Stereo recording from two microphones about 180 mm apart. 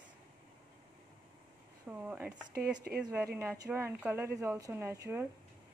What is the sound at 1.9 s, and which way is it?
Speech, 10° right (ahead or behind).